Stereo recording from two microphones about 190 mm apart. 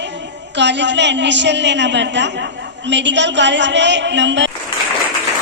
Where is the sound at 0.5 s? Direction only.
65° right (ahead or behind).